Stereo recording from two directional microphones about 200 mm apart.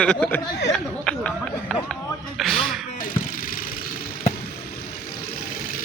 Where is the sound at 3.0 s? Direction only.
45° left (ahead or behind).